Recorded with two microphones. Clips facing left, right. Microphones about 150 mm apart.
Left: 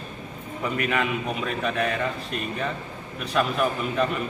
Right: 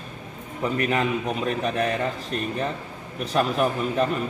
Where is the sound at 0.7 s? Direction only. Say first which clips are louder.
Right 2 dB; 35° right (ahead or behind).